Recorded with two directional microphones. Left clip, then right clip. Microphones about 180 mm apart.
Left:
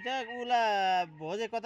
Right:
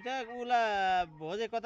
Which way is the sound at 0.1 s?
15° left (ahead or behind).